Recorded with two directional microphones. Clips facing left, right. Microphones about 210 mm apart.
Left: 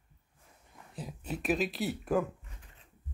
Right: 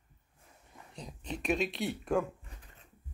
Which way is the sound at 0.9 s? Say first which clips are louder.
Left 2 dB; 5° left (ahead or behind).